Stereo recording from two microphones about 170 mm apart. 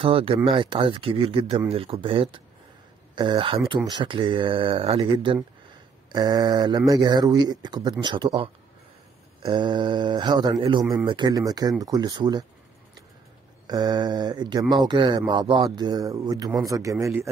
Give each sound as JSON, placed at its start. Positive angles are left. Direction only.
{"t": 0.0, "sound": "speech", "side_deg": -30}
{"t": 9.4, "sound": "speech", "side_deg": -25}
{"t": 13.7, "sound": "speech", "side_deg": -25}